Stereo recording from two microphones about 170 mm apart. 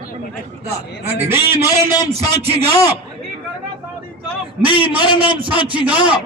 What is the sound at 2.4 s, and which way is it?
Speech, 35° right (ahead or behind).